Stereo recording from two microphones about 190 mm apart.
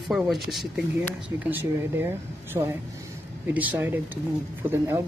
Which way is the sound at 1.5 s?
10° right (ahead or behind).